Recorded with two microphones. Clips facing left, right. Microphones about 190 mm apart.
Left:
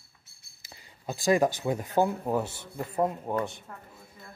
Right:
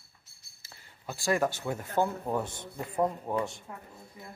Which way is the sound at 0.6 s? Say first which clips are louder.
Left 4 dB; 15° left (ahead or behind).